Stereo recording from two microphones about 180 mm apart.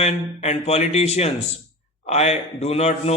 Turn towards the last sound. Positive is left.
turn(degrees=35)  # may be behind; listen again after turning